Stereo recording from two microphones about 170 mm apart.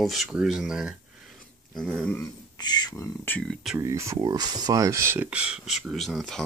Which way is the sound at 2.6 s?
25° left (ahead or behind).